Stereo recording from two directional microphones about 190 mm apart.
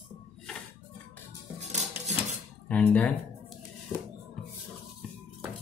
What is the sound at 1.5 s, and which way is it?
Dishes, 35° right (ahead or behind).